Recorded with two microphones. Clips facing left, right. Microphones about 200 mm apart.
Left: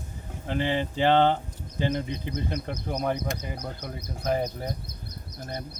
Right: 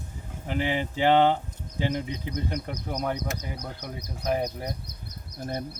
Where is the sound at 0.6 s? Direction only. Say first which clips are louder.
Even; 5° right (ahead or behind).